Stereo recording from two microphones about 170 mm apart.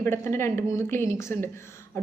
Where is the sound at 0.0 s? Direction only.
15° left (ahead or behind).